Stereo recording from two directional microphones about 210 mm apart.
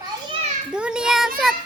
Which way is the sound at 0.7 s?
5° right (ahead or behind).